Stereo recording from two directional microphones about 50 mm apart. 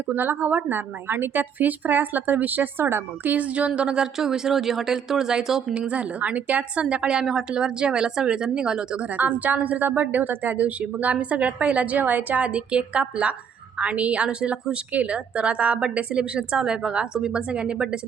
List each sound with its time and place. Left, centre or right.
0.1 s a woman's voice: right
3.3 s a woman's voice: right; by 5.7 s centre
5.7 s a woman's voice: right
9.0 s a woman's voice: right
12.5 s a woman's voice: right